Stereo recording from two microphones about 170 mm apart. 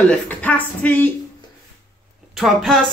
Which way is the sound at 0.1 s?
10° left (ahead or behind).